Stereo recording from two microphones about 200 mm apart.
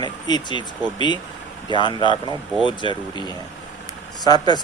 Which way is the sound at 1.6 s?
25° left (ahead or behind).